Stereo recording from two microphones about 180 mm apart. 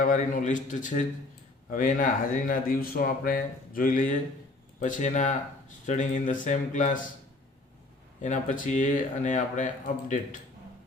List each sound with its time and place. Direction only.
0.0 s speech: 50° left (ahead or behind)
8.2 s speech: 45° left (ahead or behind)